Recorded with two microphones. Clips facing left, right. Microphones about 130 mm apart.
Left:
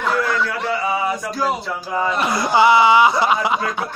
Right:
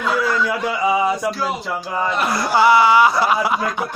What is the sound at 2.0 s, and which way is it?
A man's voice, centre (ahead or behind).